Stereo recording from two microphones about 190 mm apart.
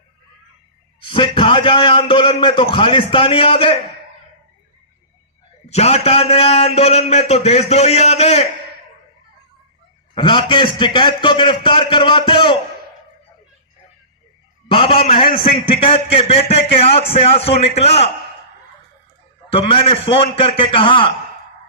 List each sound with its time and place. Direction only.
1.0 s a man's voice: 25° left (ahead or behind)
5.6 s a man's voice: 35° left (ahead or behind)
10.2 s a man's voice: 25° left (ahead or behind)
14.7 s a man's voice: 25° left (ahead or behind)
19.5 s a man's voice: 30° left (ahead or behind)